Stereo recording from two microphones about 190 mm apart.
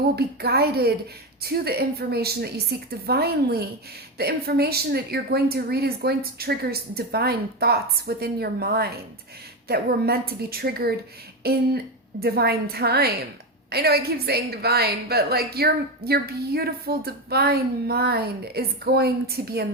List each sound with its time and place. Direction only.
0.2 s a woman's voice: 55° right (ahead or behind)